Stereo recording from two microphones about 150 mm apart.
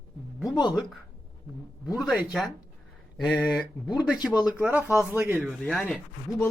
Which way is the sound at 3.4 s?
5° right (ahead or behind).